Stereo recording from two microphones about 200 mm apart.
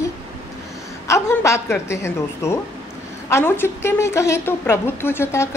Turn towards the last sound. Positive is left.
turn(degrees=15)  # may be behind; listen again after turning